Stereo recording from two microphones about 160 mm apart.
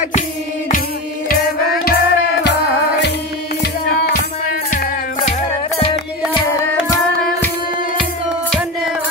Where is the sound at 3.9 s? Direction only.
65° left (ahead or behind).